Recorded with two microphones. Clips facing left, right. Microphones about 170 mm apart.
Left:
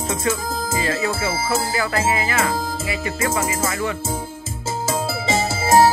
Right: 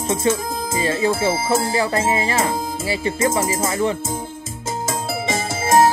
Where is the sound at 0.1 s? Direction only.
30° right (ahead or behind).